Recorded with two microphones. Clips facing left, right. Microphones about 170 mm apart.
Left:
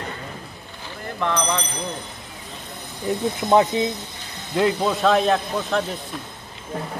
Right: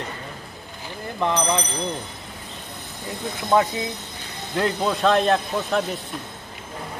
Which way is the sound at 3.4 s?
25° left (ahead or behind).